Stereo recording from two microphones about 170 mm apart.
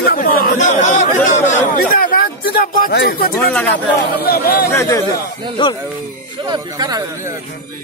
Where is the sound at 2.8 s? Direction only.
65° left (ahead or behind).